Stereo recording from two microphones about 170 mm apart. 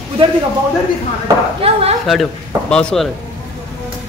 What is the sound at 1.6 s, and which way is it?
Speech, 35° right (ahead or behind).